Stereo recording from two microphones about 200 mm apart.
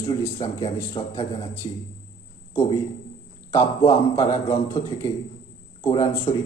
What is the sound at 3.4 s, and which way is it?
A man's voice, 20° left (ahead or behind).